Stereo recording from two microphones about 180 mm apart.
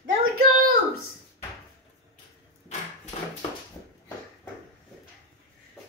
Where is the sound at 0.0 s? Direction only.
50° right (ahead or behind).